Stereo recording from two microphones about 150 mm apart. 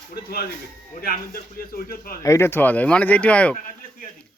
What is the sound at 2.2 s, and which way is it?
Speech, 20° left (ahead or behind).